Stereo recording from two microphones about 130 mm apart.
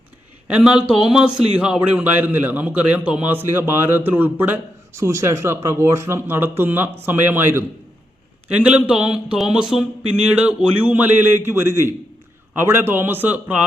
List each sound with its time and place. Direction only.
0.4 s a man's voice: 10° right (ahead or behind)